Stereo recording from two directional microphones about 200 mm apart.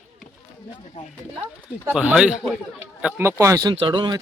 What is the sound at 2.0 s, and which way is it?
Speech, 5° right (ahead or behind).